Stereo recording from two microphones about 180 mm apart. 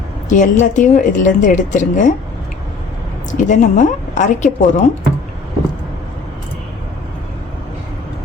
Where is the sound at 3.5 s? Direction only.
45° left (ahead or behind).